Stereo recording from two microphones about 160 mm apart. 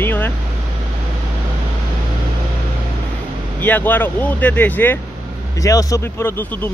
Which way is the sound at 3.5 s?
10° left (ahead or behind).